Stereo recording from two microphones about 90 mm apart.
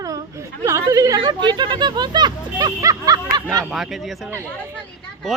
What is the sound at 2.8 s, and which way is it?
Snicker, 40° right (ahead or behind).